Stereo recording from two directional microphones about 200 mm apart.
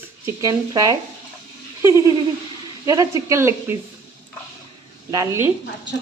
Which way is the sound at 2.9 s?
15° right (ahead or behind).